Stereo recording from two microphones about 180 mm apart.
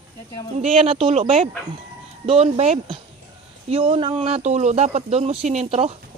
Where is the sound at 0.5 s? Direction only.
35° right (ahead or behind).